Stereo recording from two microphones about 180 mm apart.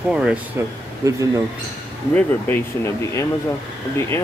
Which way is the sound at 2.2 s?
10° left (ahead or behind).